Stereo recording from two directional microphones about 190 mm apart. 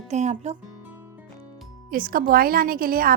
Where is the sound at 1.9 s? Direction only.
50° right (ahead or behind).